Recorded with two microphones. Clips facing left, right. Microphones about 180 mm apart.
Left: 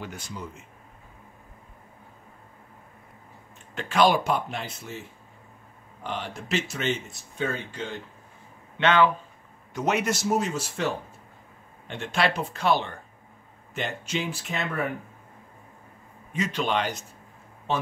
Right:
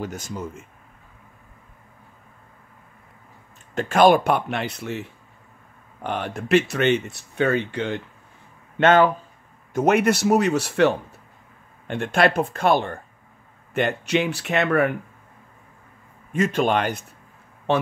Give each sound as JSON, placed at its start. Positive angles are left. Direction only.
{"t": 0.0, "sound": "speech", "side_deg": -45}
{"t": 3.7, "sound": "speech", "side_deg": -50}
{"t": 6.0, "sound": "speech", "side_deg": -60}
{"t": 8.7, "sound": "speech", "side_deg": -45}
{"t": 11.9, "sound": "speech", "side_deg": -50}
{"t": 13.7, "sound": "speech", "side_deg": -65}
{"t": 16.3, "sound": "speech", "side_deg": -50}
{"t": 17.7, "sound": "speech", "side_deg": -65}